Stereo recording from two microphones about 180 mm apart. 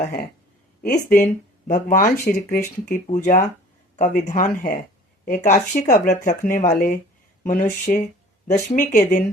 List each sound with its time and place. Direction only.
0.0 s speech: 50° left (ahead or behind)